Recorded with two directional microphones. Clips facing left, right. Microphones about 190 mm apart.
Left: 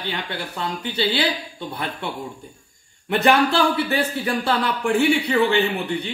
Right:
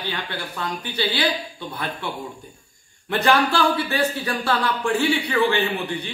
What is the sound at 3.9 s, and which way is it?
Speech, 20° left (ahead or behind).